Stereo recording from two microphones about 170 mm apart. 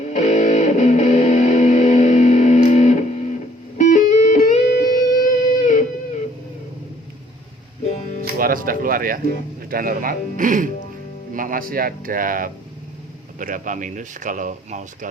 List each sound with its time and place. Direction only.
0.0 s music: 45° left (ahead or behind)
8.2 s speech: 55° right (ahead or behind)